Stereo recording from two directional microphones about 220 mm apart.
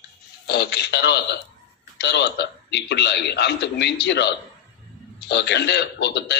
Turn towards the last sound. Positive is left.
turn(degrees=50)  # may be behind; listen again after turning